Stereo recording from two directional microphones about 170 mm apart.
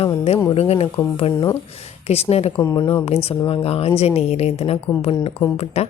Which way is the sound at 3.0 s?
35° left (ahead or behind).